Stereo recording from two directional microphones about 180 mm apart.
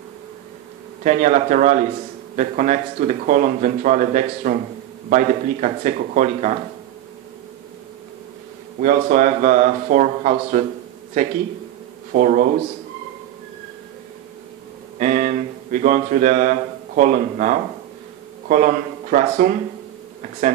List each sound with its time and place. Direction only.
1.0 s speech: 45° right (ahead or behind)
8.8 s speech: 45° right (ahead or behind)
12.1 s speech: 50° right (ahead or behind)
15.0 s speech: 45° right (ahead or behind)